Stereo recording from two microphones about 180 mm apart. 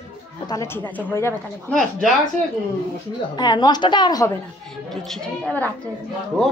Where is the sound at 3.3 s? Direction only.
25° left (ahead or behind).